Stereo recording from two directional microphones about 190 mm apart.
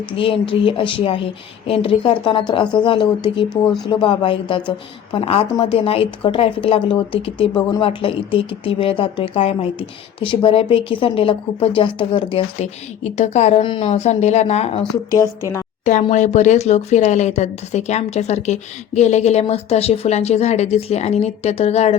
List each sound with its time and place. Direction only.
0.2 s a woman's voice: 30° left (ahead or behind)